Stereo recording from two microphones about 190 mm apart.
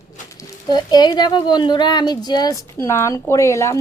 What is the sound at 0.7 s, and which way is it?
Speech, 20° left (ahead or behind).